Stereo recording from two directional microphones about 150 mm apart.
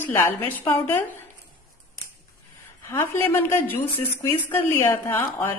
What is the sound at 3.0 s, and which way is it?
A woman's voice, 15° left (ahead or behind).